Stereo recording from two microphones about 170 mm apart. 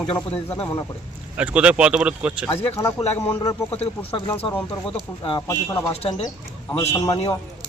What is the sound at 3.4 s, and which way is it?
Speech, 15° left (ahead or behind).